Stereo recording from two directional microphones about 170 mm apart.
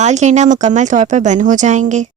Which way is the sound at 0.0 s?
45° right (ahead or behind).